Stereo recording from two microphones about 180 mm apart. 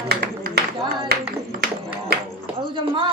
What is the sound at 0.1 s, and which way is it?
Music, 60° right (ahead or behind).